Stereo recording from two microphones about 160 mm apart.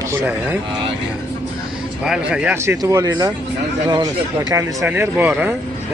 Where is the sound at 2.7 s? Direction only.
20° right (ahead or behind).